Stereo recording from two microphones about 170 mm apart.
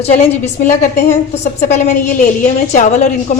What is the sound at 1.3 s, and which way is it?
A woman's voice, 45° left (ahead or behind).